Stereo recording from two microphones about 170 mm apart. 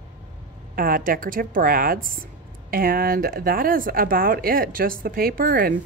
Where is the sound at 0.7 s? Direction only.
55° right (ahead or behind).